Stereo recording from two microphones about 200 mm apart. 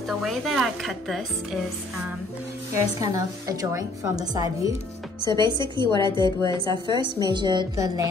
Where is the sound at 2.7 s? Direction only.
15° right (ahead or behind).